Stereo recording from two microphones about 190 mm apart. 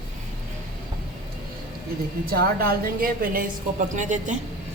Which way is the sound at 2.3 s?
55° right (ahead or behind).